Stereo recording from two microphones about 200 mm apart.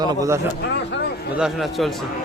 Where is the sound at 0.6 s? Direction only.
60° left (ahead or behind).